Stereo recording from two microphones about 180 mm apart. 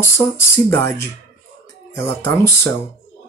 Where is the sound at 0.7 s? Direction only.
10° left (ahead or behind).